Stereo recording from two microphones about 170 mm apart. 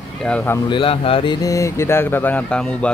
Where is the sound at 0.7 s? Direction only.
30° left (ahead or behind).